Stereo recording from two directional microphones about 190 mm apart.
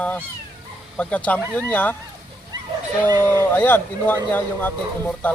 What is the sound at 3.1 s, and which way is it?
Speech, 20° right (ahead or behind).